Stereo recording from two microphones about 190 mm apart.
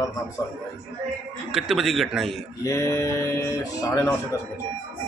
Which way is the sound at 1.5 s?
Centre (ahead or behind).